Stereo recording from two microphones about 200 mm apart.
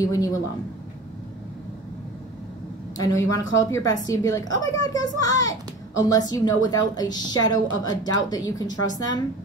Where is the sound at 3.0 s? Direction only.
20° left (ahead or behind).